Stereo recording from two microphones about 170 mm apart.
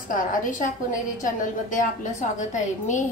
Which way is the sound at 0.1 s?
50° left (ahead or behind).